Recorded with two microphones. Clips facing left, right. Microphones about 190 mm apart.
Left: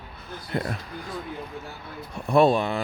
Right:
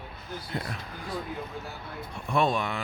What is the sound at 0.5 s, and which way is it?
Speech, 55° left (ahead or behind).